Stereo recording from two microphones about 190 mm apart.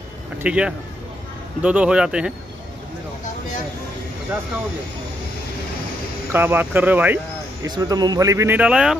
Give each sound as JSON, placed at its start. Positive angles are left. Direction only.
{"t": 0.4, "sound": "speech", "side_deg": -5}
{"t": 6.3, "sound": "speech", "side_deg": -10}
{"t": 7.6, "sound": "speech", "side_deg": -20}